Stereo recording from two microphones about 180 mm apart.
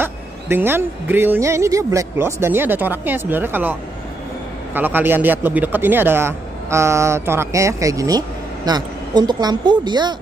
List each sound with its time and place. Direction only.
0.0 s speech: 10° right (ahead or behind)
4.7 s a woman's voice: 10° right (ahead or behind)